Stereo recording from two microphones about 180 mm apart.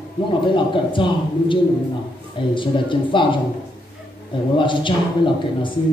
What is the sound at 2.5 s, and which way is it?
Speech, 25° left (ahead or behind).